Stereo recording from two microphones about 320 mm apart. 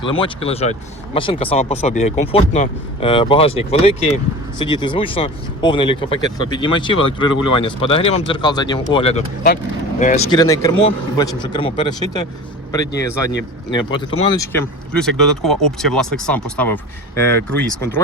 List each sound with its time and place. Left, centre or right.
0.0 s speech: centre
10.3 s speech: centre